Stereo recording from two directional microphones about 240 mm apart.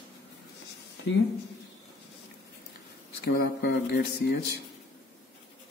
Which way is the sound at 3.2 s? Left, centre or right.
Left.